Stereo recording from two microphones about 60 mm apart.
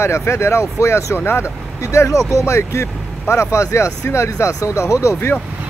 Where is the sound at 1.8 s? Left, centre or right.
Left.